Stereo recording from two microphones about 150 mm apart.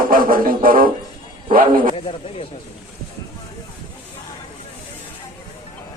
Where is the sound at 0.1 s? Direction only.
70° right (ahead or behind).